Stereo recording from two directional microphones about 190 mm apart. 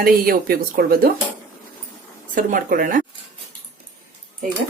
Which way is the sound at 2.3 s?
45° right (ahead or behind).